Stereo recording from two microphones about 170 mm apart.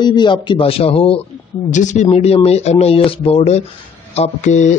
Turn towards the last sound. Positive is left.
turn(degrees=45)  # may be behind; listen again after turning